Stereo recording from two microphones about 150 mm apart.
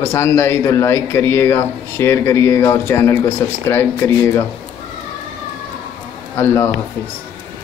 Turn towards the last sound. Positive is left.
turn(degrees=20)  # may be behind; listen again after turning